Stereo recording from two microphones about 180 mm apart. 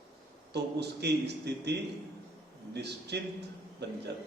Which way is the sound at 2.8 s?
70° right (ahead or behind).